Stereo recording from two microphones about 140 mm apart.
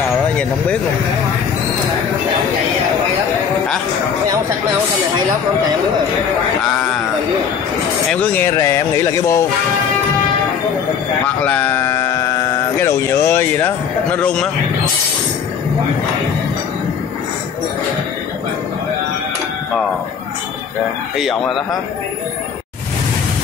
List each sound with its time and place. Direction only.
8.1 s speech: 10° left (ahead or behind)
11.4 s a sound: 10° left (ahead or behind)
12.8 s speech: 20° left (ahead or behind)
14.1 s speech: 5° left (ahead or behind)
21.2 s speech: centre (ahead or behind)